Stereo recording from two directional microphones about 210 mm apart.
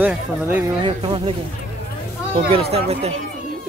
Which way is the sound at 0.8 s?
25° right (ahead or behind).